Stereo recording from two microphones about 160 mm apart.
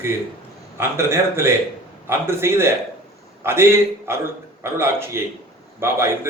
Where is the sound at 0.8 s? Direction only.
15° right (ahead or behind).